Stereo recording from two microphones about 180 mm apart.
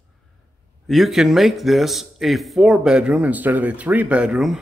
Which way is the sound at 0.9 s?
Centre (ahead or behind).